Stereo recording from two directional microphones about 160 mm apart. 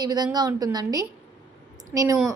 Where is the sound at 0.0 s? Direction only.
25° right (ahead or behind).